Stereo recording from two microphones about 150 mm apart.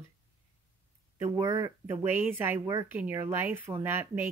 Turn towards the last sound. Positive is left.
turn(degrees=-15)  # may be behind; listen again after turning